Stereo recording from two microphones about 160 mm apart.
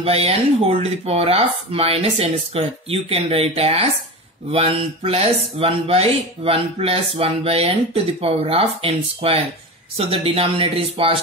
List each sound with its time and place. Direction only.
0.0 s speech: 40° right (ahead or behind)